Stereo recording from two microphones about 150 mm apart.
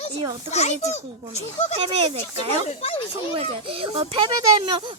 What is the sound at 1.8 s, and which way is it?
Speech, 40° right (ahead or behind).